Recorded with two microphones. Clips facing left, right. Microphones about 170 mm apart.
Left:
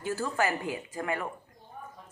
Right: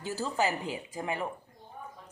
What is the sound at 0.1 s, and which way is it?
A woman's voice, 15° right (ahead or behind).